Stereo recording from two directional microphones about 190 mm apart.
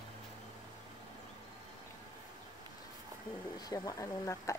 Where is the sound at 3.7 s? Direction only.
20° left (ahead or behind).